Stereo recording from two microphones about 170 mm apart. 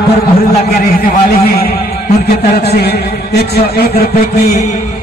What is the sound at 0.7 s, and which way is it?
Speech, 60° left (ahead or behind).